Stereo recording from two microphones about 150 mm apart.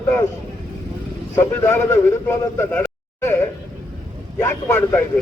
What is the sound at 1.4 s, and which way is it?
Speech, 15° left (ahead or behind).